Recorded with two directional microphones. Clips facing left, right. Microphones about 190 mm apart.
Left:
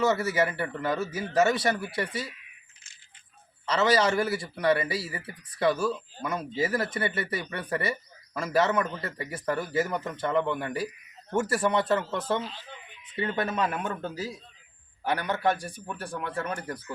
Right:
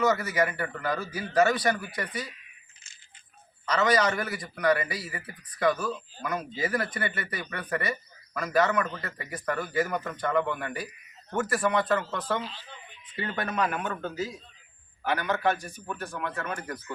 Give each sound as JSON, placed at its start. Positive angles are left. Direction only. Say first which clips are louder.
{"t": 0.0, "sound": "speech", "louder": "left 1 dB", "side_deg": 25}
{"t": 3.7, "sound": "speech", "louder": "left 1 dB", "side_deg": 30}
{"t": 15.0, "sound": "a man's voice", "louder": "even", "side_deg": 35}